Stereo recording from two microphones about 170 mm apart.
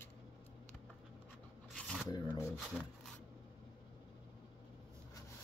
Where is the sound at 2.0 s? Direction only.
20° left (ahead or behind).